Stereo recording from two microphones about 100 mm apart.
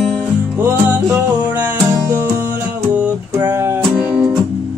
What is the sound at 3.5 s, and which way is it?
Music, 25° right (ahead or behind).